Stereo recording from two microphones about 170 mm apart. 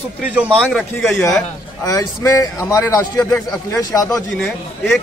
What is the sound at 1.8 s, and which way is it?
A man's voice, 20° left (ahead or behind).